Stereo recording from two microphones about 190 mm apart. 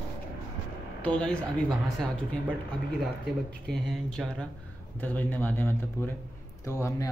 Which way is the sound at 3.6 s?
Centre (ahead or behind).